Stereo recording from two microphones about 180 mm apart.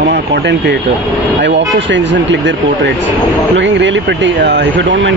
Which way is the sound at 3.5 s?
85° right.